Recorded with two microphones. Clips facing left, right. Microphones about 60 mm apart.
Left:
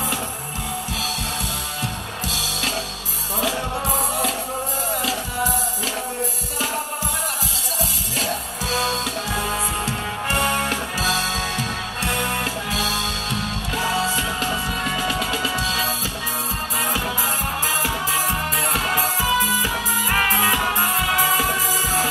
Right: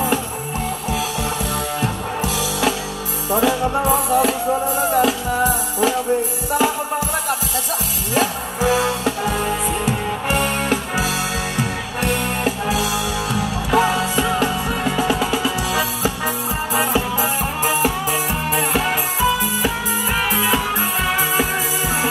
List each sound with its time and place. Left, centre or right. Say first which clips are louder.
3.3 s music: right 7 dB; right
4.9 s music: right 9 dB; right
8.1 s music: right 6 dB; right
11.0 s music: right 1 dB; right
12.4 s music: right 5 dB; centre
14.9 s music: right 6 dB; centre
18.5 s music: right 3 dB; centre
18.8 s music: right 2 dB; right